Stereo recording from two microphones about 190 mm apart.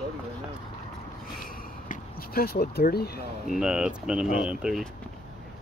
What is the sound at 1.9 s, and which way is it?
Speech, 50° left (ahead or behind).